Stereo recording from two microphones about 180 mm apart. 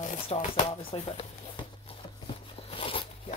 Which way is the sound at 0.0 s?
45° left (ahead or behind).